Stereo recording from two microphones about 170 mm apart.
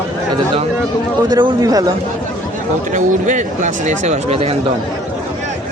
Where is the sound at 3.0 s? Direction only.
45° right (ahead or behind).